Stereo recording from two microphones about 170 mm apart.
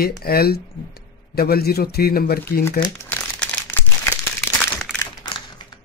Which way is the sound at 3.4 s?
10° left (ahead or behind).